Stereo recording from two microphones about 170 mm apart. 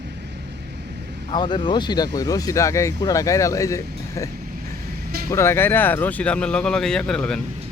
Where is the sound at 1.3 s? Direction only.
25° left (ahead or behind).